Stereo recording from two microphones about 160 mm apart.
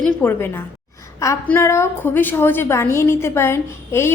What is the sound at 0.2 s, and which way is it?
A woman's voice, 15° left (ahead or behind).